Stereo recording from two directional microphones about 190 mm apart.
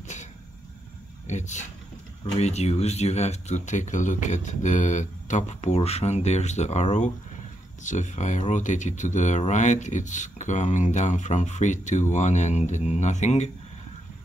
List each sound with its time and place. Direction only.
1.2 s speech: 40° left (ahead or behind)